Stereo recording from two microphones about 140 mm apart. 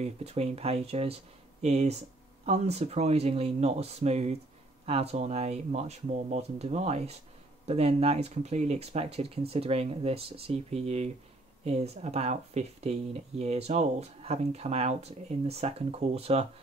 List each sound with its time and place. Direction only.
0.0 s speech: 50° right (ahead or behind)